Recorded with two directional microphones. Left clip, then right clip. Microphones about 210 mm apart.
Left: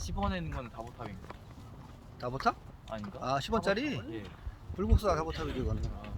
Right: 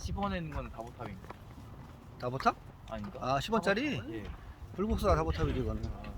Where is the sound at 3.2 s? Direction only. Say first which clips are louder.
Right 1 dB; 15° right (ahead or behind).